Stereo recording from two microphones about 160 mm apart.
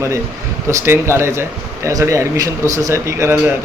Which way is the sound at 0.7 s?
15° right (ahead or behind).